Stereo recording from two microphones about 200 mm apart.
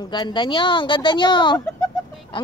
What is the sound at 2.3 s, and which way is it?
Music, 25° left (ahead or behind).